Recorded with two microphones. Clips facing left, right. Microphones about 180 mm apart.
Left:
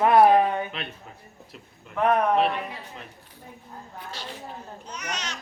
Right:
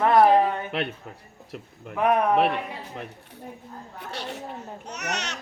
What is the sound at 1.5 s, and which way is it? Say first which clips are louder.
Speech: right 10 dB; 60° right (ahead or behind).